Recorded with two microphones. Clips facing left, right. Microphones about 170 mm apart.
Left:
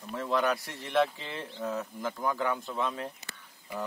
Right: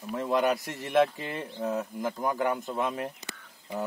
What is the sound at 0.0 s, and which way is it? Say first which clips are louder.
Speech: right 4 dB; 10° right (ahead or behind).